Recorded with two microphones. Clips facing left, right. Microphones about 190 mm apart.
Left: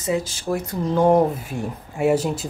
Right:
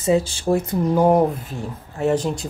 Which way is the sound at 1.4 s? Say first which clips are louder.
Left 2 dB; 10° left (ahead or behind).